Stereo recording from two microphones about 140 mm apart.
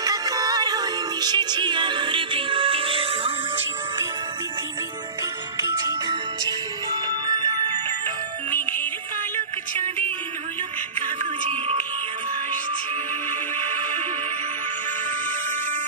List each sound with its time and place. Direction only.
0.0 s music: 25° right (ahead or behind)
5.6 s music: 20° right (ahead or behind)
8.5 s music: 15° left (ahead or behind)